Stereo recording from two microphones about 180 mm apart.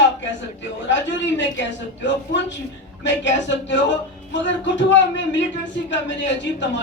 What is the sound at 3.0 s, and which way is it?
Speech, 80° left.